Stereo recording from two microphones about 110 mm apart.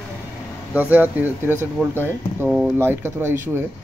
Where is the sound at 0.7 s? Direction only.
15° right (ahead or behind).